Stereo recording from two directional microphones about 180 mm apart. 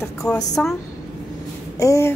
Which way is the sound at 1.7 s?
15° left (ahead or behind).